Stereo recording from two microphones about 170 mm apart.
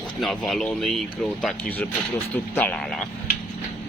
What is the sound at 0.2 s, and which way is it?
Speech, centre (ahead or behind).